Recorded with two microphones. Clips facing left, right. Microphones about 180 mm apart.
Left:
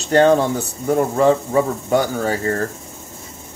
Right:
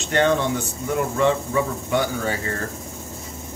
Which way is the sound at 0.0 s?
40° left (ahead or behind).